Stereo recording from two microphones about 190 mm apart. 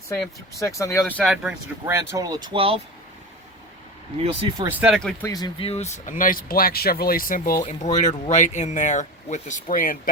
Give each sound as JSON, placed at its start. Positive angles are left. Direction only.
{"t": 0.6, "sound": "speech", "side_deg": 15}
{"t": 2.1, "sound": "speech", "side_deg": -20}
{"t": 4.2, "sound": "speech", "side_deg": -30}
{"t": 4.6, "sound": "speech", "side_deg": -10}
{"t": 5.2, "sound": "speech", "side_deg": 20}